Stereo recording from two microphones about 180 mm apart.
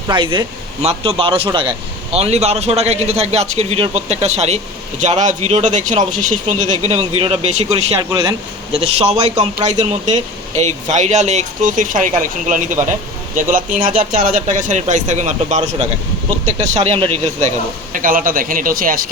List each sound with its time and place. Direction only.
0.1 s speech: 25° right (ahead or behind)
8.1 s speech: 20° right (ahead or behind)
8.7 s speech: 35° right (ahead or behind)
9.9 s speech: 40° right (ahead or behind)
17.9 s speech: 50° right (ahead or behind)